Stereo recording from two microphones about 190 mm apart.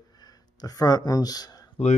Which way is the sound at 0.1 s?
20° left (ahead or behind).